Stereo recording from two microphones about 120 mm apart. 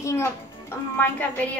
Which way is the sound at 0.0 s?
20° left (ahead or behind).